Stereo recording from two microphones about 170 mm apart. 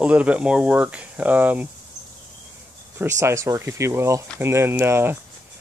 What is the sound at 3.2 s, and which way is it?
Speech, 15° right (ahead or behind).